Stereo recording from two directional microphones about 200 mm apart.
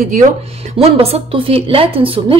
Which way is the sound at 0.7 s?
30° right (ahead or behind).